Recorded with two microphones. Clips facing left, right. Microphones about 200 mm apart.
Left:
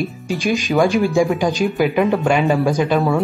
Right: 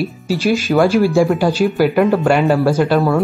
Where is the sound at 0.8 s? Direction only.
15° left (ahead or behind).